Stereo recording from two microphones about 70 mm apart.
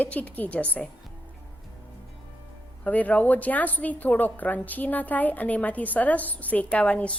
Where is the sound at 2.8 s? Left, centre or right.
Left.